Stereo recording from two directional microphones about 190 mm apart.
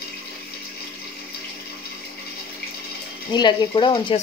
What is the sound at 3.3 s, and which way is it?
Speech, 25° left (ahead or behind).